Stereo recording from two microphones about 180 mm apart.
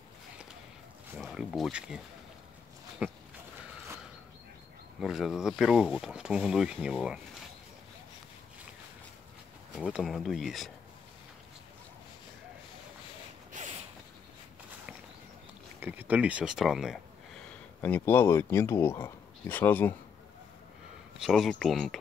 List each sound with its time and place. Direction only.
1.1 s speech: centre (ahead or behind)
3.0 s speech: 5° right (ahead or behind)
5.0 s speech: 5° right (ahead or behind)
9.8 s speech: centre (ahead or behind)
13.5 s a sound: 45° right (ahead or behind)
15.8 s speech: 10° right (ahead or behind)
17.8 s speech: 10° left (ahead or behind)
21.2 s speech: centre (ahead or behind)